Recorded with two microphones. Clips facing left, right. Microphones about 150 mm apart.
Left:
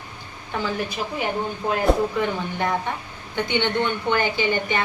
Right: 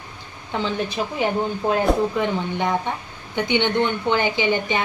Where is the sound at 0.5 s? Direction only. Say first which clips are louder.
Right 2 dB; 25° right (ahead or behind).